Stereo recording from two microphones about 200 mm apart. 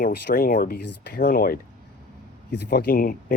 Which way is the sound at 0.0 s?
50° left (ahead or behind).